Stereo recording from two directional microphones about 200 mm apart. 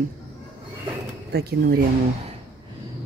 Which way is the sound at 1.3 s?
50° right (ahead or behind).